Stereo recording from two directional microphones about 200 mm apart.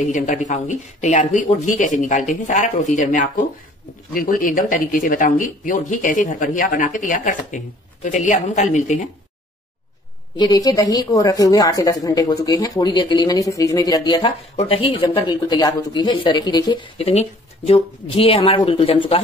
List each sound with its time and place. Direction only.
0.1 s speech: 40° left (ahead or behind)
10.3 s a woman's voice: 20° left (ahead or behind)